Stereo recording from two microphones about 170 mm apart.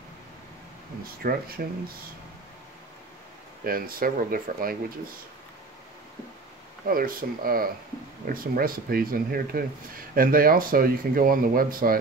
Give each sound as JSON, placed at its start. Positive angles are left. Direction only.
{"t": 1.2, "sound": "speech", "side_deg": -60}
{"t": 3.6, "sound": "speech", "side_deg": -60}
{"t": 6.9, "sound": "speech", "side_deg": -55}